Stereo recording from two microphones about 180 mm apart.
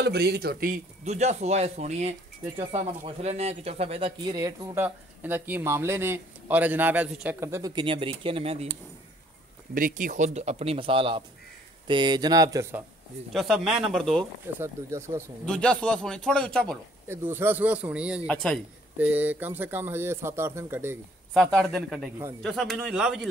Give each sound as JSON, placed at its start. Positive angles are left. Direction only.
{"t": 0.0, "sound": "speech", "side_deg": -65}
{"t": 1.0, "sound": "speech", "side_deg": -40}
{"t": 9.8, "sound": "speech", "side_deg": -50}
{"t": 13.3, "sound": "speech", "side_deg": 0}
{"t": 14.6, "sound": "speech", "side_deg": -15}
{"t": 15.4, "sound": "speech", "side_deg": 5}
{"t": 17.1, "sound": "speech", "side_deg": -10}
{"t": 18.9, "sound": "speech", "side_deg": -10}
{"t": 21.3, "sound": "speech", "side_deg": 0}